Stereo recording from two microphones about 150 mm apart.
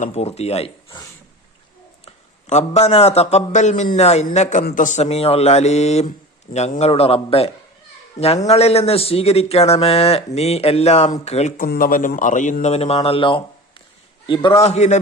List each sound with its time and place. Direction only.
0.0 s a man's voice: 45° left (ahead or behind)
2.0 s a man's voice: 45° left (ahead or behind)
11.5 s a man's voice: 70° left (ahead or behind); by 14.6 s 30° left (ahead or behind)
14.6 s a man's voice: 45° left (ahead or behind)